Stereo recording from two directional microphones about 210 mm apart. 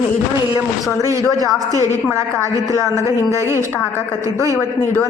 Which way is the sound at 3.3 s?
15° right (ahead or behind).